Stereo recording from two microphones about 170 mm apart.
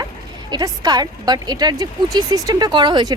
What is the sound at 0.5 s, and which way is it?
A woman's voice, 20° right (ahead or behind).